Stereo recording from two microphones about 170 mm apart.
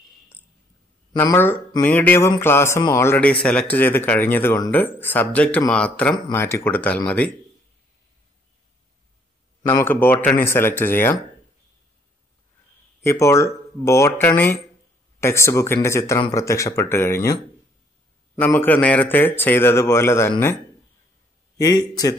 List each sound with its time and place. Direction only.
1.1 s a man's voice: 15° left (ahead or behind)
9.6 s a sound: 25° left (ahead or behind)
9.8 s a man's voice: 10° left (ahead or behind)
13.0 s a man's voice: 15° left (ahead or behind)
21.5 s speech: 20° left (ahead or behind)